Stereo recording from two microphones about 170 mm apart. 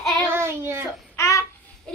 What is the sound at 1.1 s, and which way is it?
Babbling, 20° left (ahead or behind).